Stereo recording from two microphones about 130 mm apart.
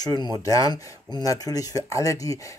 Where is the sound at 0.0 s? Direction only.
30° left (ahead or behind).